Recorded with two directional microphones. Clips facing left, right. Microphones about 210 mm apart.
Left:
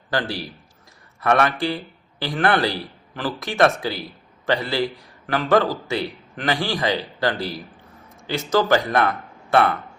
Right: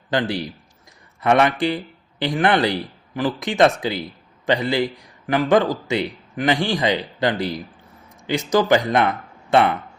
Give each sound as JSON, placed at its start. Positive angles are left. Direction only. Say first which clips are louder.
{"t": 0.1, "sound": "a man's voice", "louder": "right 3 dB", "side_deg": -20}